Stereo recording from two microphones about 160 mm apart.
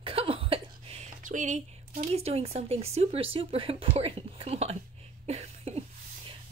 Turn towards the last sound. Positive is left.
turn(degrees=-40)  # may be behind; listen again after turning